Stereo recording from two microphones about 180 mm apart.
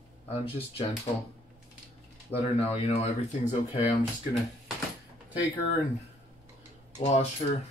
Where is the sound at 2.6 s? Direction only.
35° left (ahead or behind).